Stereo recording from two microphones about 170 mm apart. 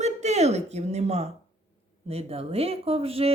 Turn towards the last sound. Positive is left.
turn(degrees=-35)  # may be behind; listen again after turning